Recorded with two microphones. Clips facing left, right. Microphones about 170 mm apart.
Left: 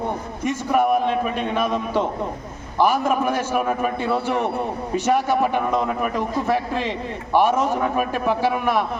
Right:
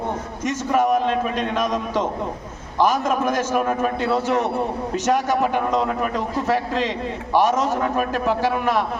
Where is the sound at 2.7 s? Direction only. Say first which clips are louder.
Even; 10° left (ahead or behind).